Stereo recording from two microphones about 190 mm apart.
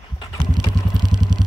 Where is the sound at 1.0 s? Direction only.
20° right (ahead or behind).